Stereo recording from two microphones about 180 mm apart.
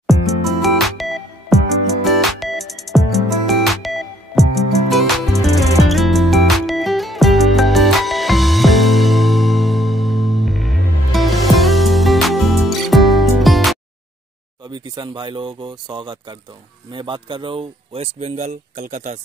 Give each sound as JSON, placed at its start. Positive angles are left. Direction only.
{"t": 0.0, "sound": "music", "side_deg": 0}
{"t": 14.7, "sound": "speech", "side_deg": -25}